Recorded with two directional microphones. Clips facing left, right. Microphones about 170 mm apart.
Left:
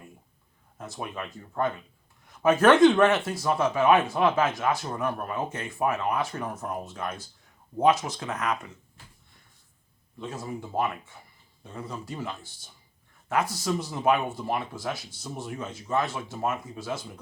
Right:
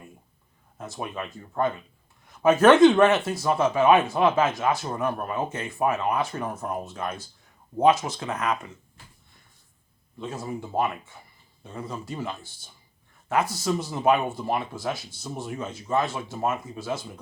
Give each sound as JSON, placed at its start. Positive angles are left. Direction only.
{"t": 0.8, "sound": "speech", "side_deg": -25}
{"t": 10.2, "sound": "speech", "side_deg": -25}